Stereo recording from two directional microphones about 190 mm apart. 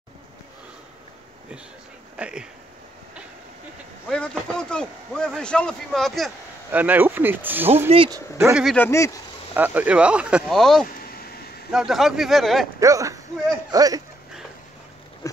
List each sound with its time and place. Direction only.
2.1 s speech: 5° right (ahead or behind)
4.1 s speech: 5° left (ahead or behind)
7.9 s speech: 25° right (ahead or behind)
8.4 s speech: 10° right (ahead or behind)
8.7 s speech: 15° left (ahead or behind)
9.5 s speech: 10° right (ahead or behind)
12.8 s speech: 15° right (ahead or behind)
15.2 s a sound: 15° left (ahead or behind)